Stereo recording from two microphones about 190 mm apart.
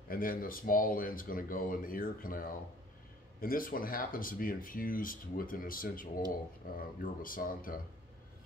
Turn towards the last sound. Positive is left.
turn(degrees=50)  # may be behind; listen again after turning